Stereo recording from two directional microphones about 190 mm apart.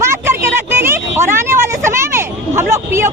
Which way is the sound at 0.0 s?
15° right (ahead or behind).